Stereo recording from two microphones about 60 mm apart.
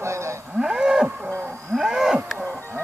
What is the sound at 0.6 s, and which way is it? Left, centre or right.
Cattle, centre.